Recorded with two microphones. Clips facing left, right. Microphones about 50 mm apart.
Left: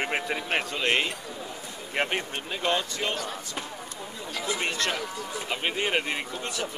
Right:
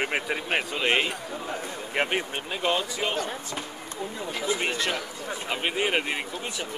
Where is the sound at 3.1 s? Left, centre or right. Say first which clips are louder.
Right 3 dB; right.